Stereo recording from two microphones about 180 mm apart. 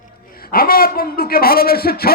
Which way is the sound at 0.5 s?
55° left (ahead or behind).